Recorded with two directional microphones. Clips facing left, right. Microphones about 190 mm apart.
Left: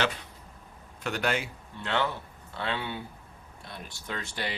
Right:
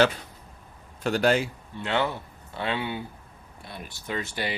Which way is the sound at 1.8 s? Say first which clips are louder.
Right 3 dB; 10° right (ahead or behind).